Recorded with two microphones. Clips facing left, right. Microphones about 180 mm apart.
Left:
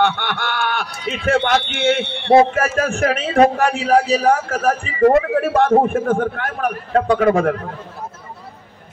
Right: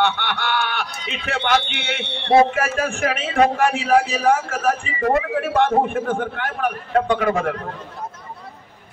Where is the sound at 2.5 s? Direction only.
40° left (ahead or behind).